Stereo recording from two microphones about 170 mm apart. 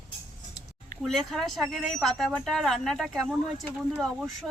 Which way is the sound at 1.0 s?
Centre (ahead or behind).